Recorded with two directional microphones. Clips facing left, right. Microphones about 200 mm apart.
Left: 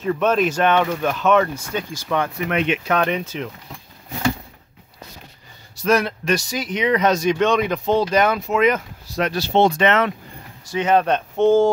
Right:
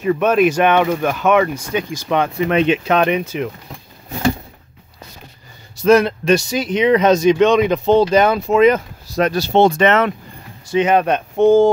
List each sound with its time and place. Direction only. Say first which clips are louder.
0.0 s speech: right 4 dB; 10° right (ahead or behind)
5.8 s speech: right 7 dB; 25° right (ahead or behind); by 10.1 s 45° right (ahead or behind)
10.7 s speech: right 3 dB; 15° right (ahead or behind)